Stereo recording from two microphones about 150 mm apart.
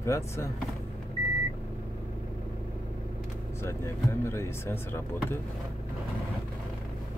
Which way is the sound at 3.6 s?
15° left (ahead or behind).